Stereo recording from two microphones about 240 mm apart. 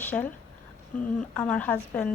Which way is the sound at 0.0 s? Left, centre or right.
Centre.